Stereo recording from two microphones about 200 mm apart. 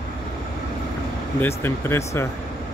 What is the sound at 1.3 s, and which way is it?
Speech, 10° left (ahead or behind).